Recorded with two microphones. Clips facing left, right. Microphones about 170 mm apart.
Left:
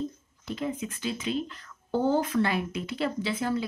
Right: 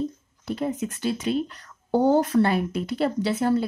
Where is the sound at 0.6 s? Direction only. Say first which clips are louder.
Right 4 dB; 45° right (ahead or behind).